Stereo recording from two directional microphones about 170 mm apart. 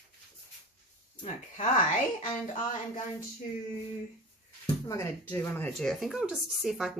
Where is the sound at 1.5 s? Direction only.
50° left (ahead or behind).